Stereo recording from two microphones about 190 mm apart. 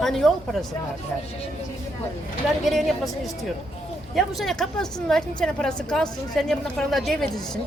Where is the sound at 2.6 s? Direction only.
Centre (ahead or behind).